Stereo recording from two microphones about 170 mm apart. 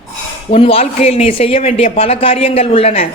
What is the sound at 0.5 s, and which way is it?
A woman's voice, 35° left (ahead or behind).